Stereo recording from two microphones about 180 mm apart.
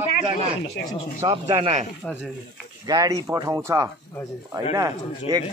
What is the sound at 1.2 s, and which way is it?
Speech, 25° right (ahead or behind).